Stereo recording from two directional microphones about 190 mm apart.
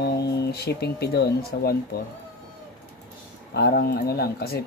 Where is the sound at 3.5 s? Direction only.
60° left (ahead or behind).